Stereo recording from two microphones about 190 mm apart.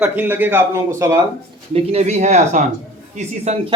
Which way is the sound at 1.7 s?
35° right (ahead or behind).